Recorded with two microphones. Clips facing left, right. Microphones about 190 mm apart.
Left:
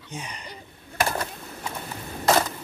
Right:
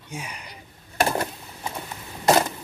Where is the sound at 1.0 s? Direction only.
30° right (ahead or behind).